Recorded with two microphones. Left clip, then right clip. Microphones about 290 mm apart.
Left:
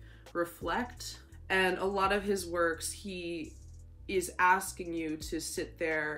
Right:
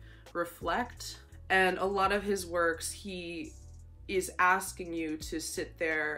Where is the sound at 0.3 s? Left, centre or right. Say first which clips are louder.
Right 1 dB; centre.